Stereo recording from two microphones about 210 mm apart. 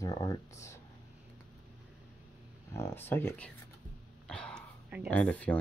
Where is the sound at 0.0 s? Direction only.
15° left (ahead or behind).